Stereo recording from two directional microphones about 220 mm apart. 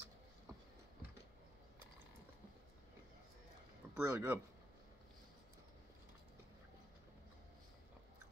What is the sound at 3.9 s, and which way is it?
Speech, 10° right (ahead or behind).